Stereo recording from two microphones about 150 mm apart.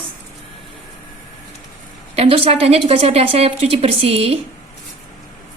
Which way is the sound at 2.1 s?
40° right (ahead or behind).